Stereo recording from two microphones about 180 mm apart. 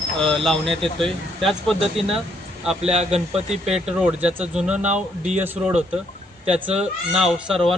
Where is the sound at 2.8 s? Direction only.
35° right (ahead or behind).